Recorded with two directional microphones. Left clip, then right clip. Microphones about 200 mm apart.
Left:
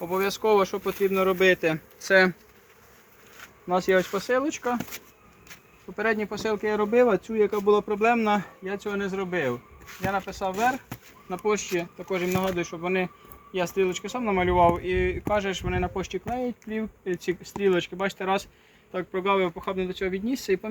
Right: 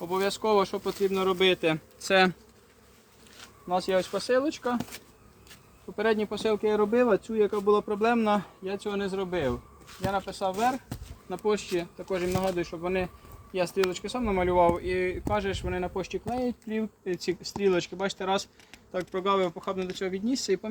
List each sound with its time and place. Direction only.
0.0 s speech: 15° right (ahead or behind)
2.0 s bee: 35° right (ahead or behind)
3.7 s speech: 35° left (ahead or behind)
6.0 s speech: centre (ahead or behind)
6.9 s speech: 30° left (ahead or behind); by 10.8 s 5° left (ahead or behind)
11.4 s speech: 15° left (ahead or behind); by 20.7 s centre (ahead or behind)